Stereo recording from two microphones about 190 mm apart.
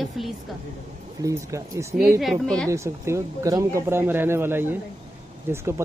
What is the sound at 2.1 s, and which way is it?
Speech, centre (ahead or behind).